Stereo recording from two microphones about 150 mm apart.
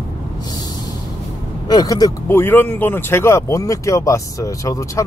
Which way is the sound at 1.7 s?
25° left (ahead or behind).